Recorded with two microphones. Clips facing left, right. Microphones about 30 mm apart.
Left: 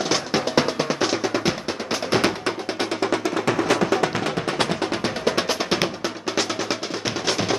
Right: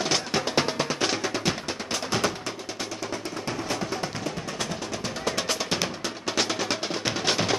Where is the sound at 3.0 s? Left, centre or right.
Left.